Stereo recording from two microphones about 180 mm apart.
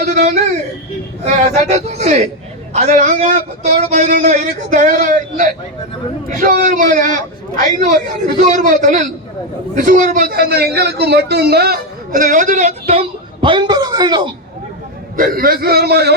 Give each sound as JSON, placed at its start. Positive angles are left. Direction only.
{"t": 0.1, "sound": "speech", "side_deg": -40}
{"t": 1.6, "sound": "a man's voice", "side_deg": -35}
{"t": 15.1, "sound": "a man's voice", "side_deg": -50}